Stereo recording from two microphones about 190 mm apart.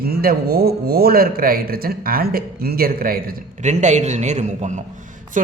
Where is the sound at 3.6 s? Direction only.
40° right (ahead or behind).